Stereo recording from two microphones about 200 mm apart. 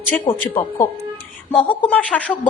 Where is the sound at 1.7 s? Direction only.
5° left (ahead or behind).